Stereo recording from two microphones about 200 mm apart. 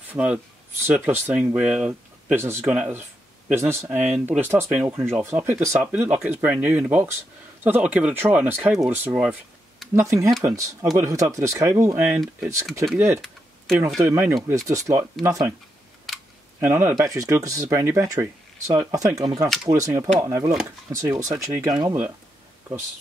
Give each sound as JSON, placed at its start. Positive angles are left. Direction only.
{"t": 0.1, "sound": "speech", "side_deg": -5}
{"t": 13.2, "sound": "tick-tock", "side_deg": 0}
{"t": 14.0, "sound": "speech", "side_deg": -10}
{"t": 16.1, "sound": "camera", "side_deg": 0}
{"t": 16.5, "sound": "speech", "side_deg": -10}